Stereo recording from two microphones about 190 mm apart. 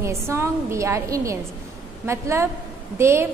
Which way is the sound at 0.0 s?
15° right (ahead or behind).